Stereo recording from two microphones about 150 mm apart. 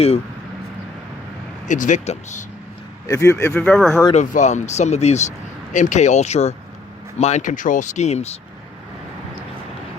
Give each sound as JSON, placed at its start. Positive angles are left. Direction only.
{"t": 1.6, "sound": "speech", "side_deg": 55}
{"t": 3.1, "sound": "speech", "side_deg": 20}
{"t": 3.5, "sound": "speech", "side_deg": 5}
{"t": 4.1, "sound": "speech", "side_deg": 55}